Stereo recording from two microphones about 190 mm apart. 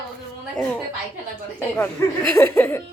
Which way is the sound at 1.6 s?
10° left (ahead or behind).